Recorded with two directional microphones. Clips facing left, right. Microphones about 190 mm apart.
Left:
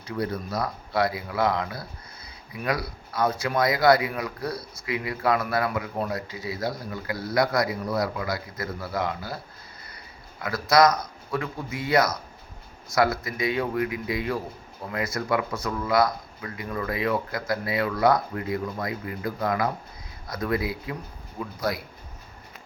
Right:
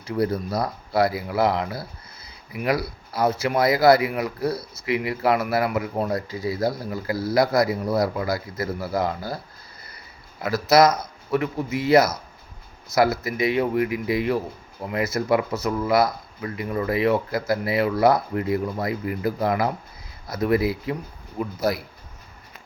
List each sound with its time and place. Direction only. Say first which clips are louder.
0.0 s a man's voice: right 5 dB; 30° right (ahead or behind)
10.4 s speech: right 3 dB; 25° right (ahead or behind)